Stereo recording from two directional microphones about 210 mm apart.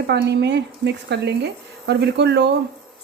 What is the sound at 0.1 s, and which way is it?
A woman's voice, 55° right (ahead or behind).